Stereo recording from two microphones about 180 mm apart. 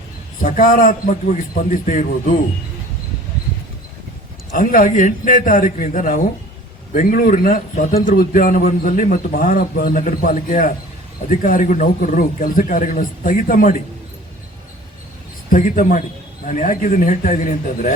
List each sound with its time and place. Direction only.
0.4 s a man's voice: 50° left (ahead or behind)
4.5 s a man's voice: 50° left (ahead or behind)
15.4 s a man's voice: 50° left (ahead or behind)